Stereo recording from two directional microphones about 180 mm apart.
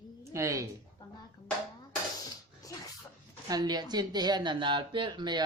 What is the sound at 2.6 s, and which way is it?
Dog, 20° left (ahead or behind).